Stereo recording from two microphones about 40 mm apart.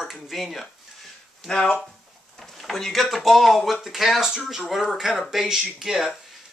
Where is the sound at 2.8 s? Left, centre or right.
Centre.